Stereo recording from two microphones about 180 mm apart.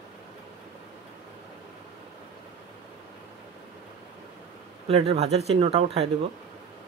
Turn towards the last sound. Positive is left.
turn(degrees=-30)  # may be behind; listen again after turning